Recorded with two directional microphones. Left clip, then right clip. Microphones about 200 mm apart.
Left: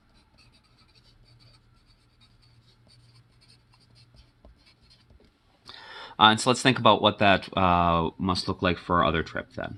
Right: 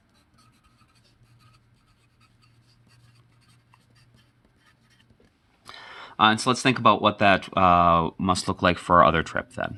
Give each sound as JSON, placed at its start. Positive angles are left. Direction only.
{"t": 5.6, "sound": "speech", "side_deg": -15}
{"t": 8.3, "sound": "speech", "side_deg": -35}